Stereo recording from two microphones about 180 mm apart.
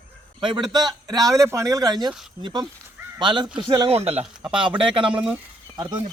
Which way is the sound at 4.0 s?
35° right (ahead or behind).